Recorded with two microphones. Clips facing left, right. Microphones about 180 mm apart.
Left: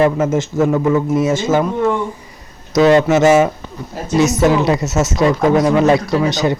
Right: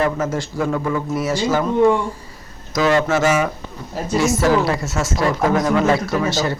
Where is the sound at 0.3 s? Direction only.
20° left (ahead or behind).